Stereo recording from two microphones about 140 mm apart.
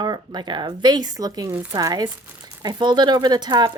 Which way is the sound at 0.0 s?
30° right (ahead or behind).